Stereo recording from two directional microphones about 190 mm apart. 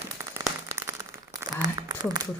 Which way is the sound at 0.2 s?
15° right (ahead or behind).